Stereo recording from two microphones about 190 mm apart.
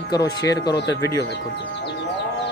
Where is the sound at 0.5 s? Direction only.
20° left (ahead or behind).